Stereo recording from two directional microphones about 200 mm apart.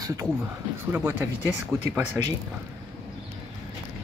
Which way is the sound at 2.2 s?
15° right (ahead or behind).